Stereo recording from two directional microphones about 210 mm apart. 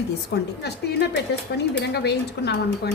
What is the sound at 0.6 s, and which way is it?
Speech, 50° left (ahead or behind).